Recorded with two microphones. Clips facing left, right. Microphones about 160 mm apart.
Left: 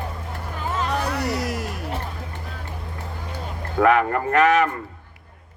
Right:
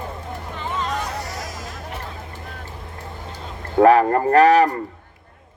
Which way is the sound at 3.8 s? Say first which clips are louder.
Right 5 dB; 35° right (ahead or behind).